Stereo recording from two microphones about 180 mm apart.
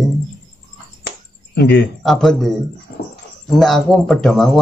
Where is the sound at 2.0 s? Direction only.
Centre (ahead or behind).